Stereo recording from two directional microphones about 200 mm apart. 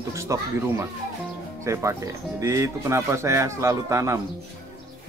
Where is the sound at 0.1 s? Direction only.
15° right (ahead or behind).